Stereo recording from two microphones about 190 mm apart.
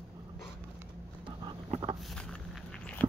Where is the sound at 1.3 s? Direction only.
30° right (ahead or behind).